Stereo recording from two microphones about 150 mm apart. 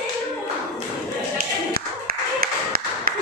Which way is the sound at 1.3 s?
85° right.